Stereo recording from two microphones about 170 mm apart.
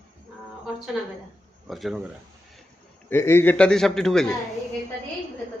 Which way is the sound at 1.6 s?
Centre (ahead or behind).